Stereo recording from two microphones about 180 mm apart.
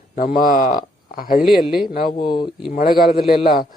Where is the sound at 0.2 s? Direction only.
55° left (ahead or behind).